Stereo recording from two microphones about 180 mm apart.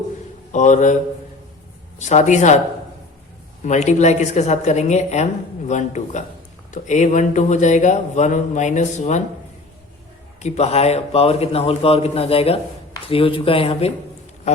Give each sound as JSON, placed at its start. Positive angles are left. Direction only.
{"t": 0.5, "sound": "speech", "side_deg": 45}
{"t": 2.0, "sound": "a woman's voice", "side_deg": 40}
{"t": 3.7, "sound": "a woman's voice", "side_deg": 40}
{"t": 10.4, "sound": "a woman's voice", "side_deg": 35}